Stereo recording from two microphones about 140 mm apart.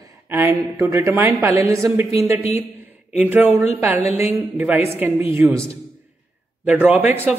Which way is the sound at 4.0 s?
50° left (ahead or behind).